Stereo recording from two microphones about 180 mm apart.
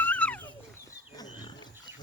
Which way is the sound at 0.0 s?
10° left (ahead or behind).